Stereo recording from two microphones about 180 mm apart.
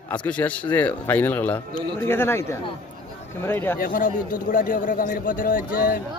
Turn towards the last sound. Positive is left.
turn(degrees=55)  # may be behind; listen again after turning